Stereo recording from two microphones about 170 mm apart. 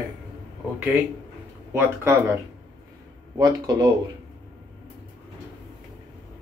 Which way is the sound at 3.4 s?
20° right (ahead or behind).